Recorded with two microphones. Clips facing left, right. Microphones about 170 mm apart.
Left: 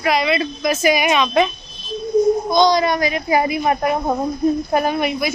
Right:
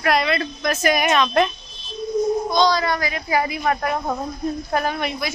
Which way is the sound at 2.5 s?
15° left (ahead or behind).